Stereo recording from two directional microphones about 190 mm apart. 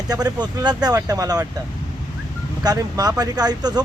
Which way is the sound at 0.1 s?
20° right (ahead or behind).